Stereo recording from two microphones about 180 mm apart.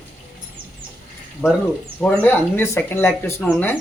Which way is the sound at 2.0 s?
10° left (ahead or behind).